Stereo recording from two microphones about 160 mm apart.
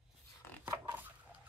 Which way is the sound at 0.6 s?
10° right (ahead or behind).